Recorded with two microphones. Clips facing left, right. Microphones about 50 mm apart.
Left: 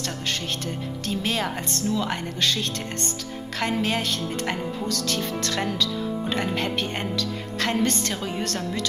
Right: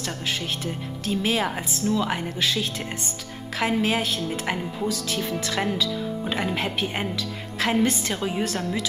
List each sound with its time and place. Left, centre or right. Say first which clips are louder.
1.0 s a woman's voice: right 3 dB; centre